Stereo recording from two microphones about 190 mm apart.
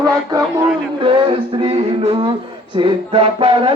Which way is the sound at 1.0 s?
25° right (ahead or behind).